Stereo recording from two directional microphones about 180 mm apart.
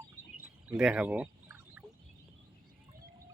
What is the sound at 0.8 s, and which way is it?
Pour, 5° right (ahead or behind).